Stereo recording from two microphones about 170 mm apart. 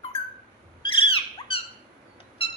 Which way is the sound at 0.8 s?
30° left (ahead or behind).